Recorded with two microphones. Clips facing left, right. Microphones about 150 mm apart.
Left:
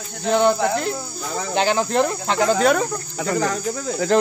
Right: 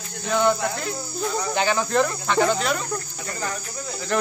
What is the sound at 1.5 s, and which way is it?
Speech, 30° left (ahead or behind).